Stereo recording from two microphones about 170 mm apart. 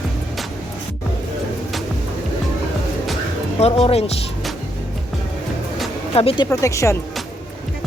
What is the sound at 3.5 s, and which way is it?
Speech, 35° left (ahead or behind).